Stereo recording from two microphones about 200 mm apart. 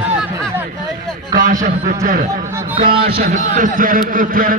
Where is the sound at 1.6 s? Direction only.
40° right (ahead or behind).